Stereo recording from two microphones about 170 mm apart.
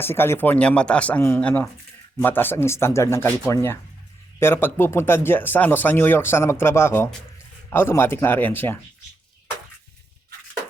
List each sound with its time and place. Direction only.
0.0 s speech: 15° left (ahead or behind)